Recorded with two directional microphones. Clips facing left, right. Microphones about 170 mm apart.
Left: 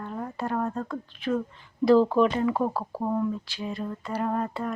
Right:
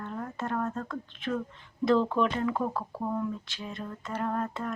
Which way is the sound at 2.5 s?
30° left (ahead or behind).